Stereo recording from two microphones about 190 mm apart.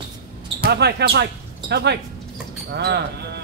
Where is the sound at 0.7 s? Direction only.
60° right (ahead or behind).